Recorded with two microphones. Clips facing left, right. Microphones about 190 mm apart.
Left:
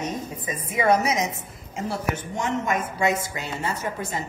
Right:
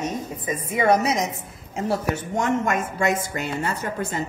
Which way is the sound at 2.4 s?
50° right (ahead or behind).